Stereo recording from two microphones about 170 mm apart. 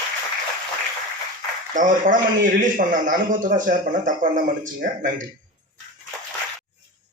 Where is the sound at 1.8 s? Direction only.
50° right (ahead or behind).